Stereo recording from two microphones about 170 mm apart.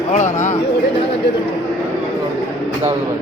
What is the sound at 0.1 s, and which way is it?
Bird, 45° left (ahead or behind).